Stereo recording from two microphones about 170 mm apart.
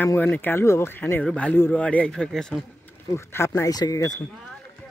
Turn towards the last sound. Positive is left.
turn(degrees=20)  # may be behind; listen again after turning